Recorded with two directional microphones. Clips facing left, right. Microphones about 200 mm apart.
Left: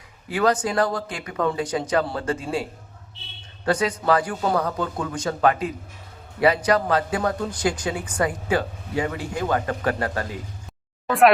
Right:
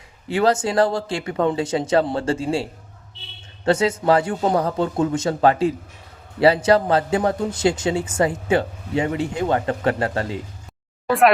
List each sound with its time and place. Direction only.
0.3 s speech: 25° right (ahead or behind)
3.7 s speech: 25° right (ahead or behind)